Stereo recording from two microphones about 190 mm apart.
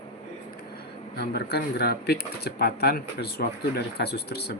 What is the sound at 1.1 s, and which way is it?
Speech, 60° left (ahead or behind).